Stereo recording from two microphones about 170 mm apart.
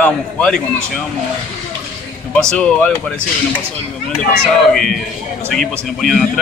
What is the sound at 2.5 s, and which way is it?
Speech, 5° left (ahead or behind).